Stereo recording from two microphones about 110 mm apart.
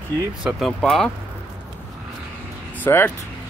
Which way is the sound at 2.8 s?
15° left (ahead or behind).